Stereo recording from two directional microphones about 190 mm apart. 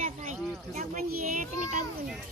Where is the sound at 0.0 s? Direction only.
40° right (ahead or behind).